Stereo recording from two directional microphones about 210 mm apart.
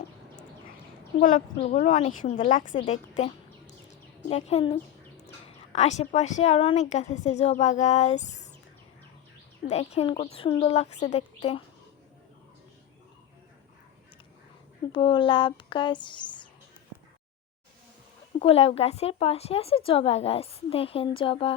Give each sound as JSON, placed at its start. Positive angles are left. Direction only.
{"t": 1.2, "sound": "a woman's voice", "side_deg": 40}
{"t": 3.8, "sound": "a sound", "side_deg": 30}
{"t": 5.5, "sound": "a woman's voice", "side_deg": 30}
{"t": 9.6, "sound": "a woman's voice", "side_deg": 30}
{"t": 14.9, "sound": "a woman's voice", "side_deg": 20}
{"t": 18.3, "sound": "a woman's voice", "side_deg": 30}